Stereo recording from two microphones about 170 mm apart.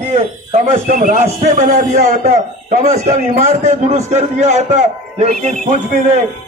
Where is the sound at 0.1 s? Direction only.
45° right (ahead or behind).